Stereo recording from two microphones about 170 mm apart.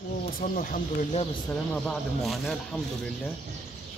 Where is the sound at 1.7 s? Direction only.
5° left (ahead or behind).